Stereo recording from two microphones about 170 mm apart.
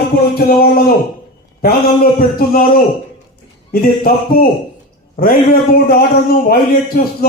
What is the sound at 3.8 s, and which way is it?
A man's voice, 55° left (ahead or behind).